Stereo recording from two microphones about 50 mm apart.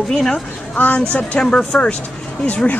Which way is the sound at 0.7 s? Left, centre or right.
Left.